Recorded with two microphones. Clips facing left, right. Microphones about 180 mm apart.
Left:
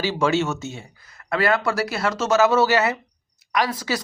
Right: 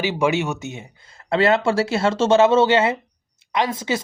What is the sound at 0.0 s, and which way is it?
Speech, 15° right (ahead or behind).